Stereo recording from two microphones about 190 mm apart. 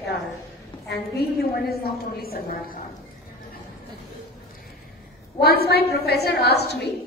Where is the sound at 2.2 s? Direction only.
55° left (ahead or behind).